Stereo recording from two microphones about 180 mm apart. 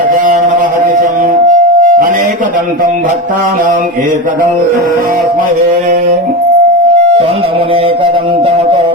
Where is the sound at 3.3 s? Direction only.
50° right (ahead or behind).